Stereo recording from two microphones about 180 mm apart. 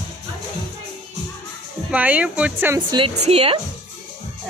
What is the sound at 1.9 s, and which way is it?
Speech, 5° right (ahead or behind).